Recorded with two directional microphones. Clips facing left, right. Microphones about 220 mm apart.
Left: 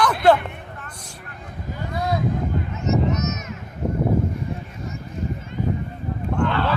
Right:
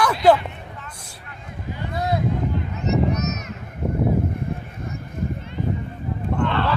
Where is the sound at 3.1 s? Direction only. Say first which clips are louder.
Even; 35° right (ahead or behind).